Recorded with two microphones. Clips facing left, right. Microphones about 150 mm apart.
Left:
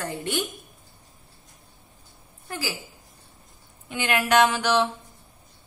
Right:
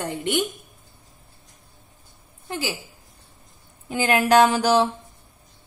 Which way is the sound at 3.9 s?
40° right (ahead or behind).